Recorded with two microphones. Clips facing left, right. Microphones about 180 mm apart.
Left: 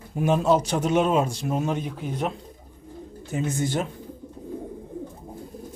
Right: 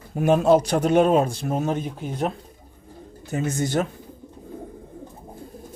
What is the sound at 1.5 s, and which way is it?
Speech, 40° right (ahead or behind).